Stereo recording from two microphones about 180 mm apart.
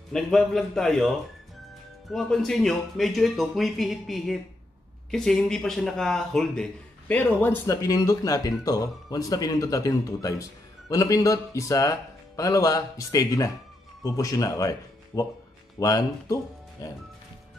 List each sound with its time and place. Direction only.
0.1 s a man's voice: centre (ahead or behind); by 16.9 s 20° left (ahead or behind)